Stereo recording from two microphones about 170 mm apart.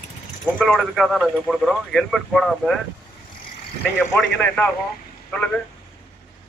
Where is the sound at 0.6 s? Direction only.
Centre (ahead or behind).